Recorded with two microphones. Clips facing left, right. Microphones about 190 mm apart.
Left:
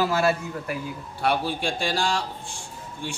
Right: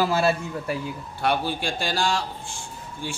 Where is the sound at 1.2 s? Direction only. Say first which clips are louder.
Even; centre (ahead or behind).